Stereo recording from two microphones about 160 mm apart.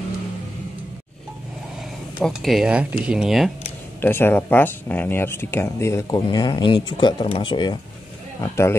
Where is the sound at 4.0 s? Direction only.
15° left (ahead or behind); by 7.8 s 30° left (ahead or behind).